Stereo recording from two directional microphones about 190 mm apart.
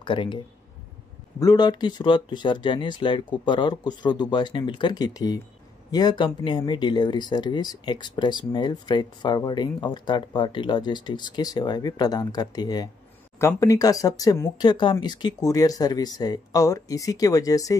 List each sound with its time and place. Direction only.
0.0 s speech: 25° left (ahead or behind)
1.4 s speech: 20° left (ahead or behind)